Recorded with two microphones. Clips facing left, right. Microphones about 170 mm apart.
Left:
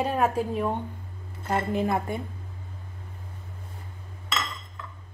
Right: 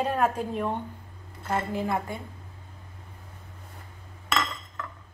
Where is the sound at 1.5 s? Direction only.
20° left (ahead or behind).